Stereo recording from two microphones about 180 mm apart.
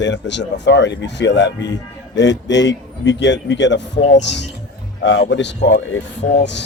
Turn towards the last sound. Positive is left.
turn(degrees=75)  # may be behind; listen again after turning